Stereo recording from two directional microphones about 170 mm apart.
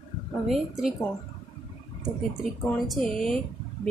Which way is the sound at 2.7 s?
Centre (ahead or behind).